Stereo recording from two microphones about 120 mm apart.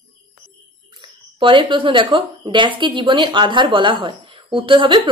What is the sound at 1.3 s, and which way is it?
A woman's voice, 45° right (ahead or behind).